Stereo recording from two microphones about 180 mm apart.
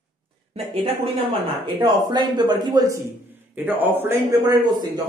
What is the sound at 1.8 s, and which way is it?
Speech, 25° right (ahead or behind).